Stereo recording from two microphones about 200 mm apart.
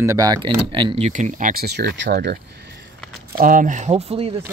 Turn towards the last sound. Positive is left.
turn(degrees=-30)  # may be behind; listen again after turning